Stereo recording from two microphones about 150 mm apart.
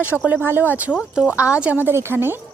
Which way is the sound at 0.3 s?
15° right (ahead or behind).